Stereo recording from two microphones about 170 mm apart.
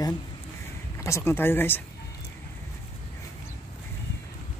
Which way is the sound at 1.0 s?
15° left (ahead or behind).